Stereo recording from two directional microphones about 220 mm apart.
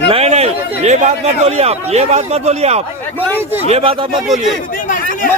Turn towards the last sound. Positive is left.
turn(degrees=-25)  # may be behind; listen again after turning